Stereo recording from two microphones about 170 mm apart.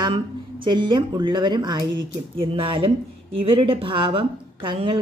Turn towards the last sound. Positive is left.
turn(degrees=-30)  # may be behind; listen again after turning